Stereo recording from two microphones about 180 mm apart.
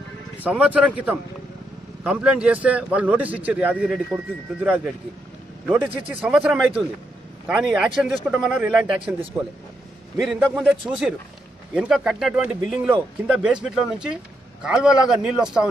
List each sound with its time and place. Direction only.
0.4 s a man's voice: 10° right (ahead or behind)
5.7 s speech: 5° right (ahead or behind)
10.1 s speech: 5° right (ahead or behind)